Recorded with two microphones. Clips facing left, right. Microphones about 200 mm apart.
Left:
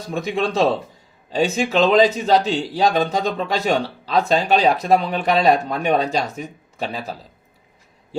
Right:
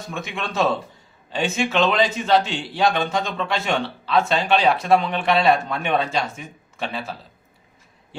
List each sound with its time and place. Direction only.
0.1 s a man's voice: 35° left (ahead or behind)